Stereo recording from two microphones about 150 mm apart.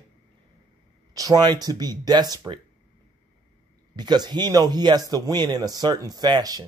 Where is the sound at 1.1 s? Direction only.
25° right (ahead or behind).